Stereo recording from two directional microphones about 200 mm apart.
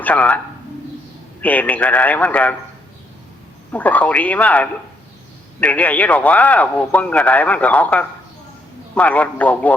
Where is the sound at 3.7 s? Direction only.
10° left (ahead or behind).